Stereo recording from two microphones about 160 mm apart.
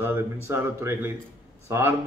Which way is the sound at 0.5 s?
15° right (ahead or behind).